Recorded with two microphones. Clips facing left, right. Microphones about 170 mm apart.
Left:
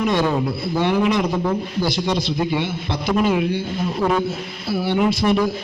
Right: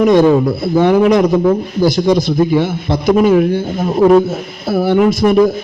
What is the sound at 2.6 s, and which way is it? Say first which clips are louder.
Speech: right 9 dB; 45° right (ahead or behind).